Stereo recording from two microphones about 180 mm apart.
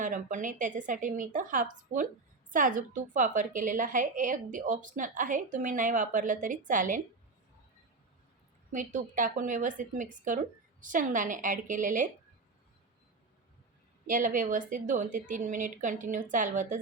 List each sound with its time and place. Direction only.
0.0 s a woman's voice: 45° right (ahead or behind)
8.7 s a woman's voice: 45° right (ahead or behind)
14.1 s a woman's voice: 45° right (ahead or behind)